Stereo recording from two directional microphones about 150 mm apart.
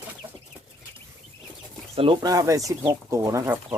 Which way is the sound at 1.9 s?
35° right (ahead or behind).